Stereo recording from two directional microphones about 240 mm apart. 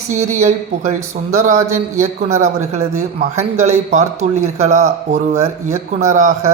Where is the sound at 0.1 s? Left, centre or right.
Right.